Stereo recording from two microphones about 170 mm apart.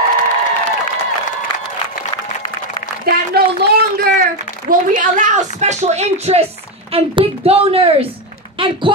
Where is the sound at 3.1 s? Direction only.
65° right (ahead or behind).